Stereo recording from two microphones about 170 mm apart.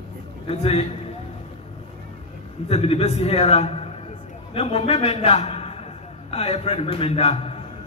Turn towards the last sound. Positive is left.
turn(degrees=35)  # may be behind; listen again after turning